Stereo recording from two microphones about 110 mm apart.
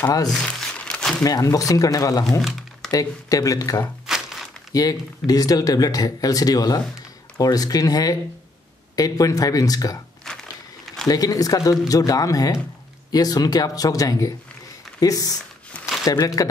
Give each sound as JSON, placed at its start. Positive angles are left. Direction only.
{"t": 0.3, "sound": "crumpling", "side_deg": 0}
{"t": 1.2, "sound": "speech", "side_deg": 35}
{"t": 4.1, "sound": "crumpling", "side_deg": -5}
{"t": 4.7, "sound": "speech", "side_deg": 35}
{"t": 10.3, "sound": "a sound", "side_deg": 5}
{"t": 11.1, "sound": "speech", "side_deg": 35}